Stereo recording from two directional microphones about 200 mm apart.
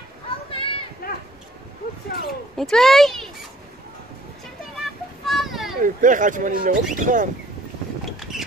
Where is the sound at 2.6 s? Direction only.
Centre (ahead or behind).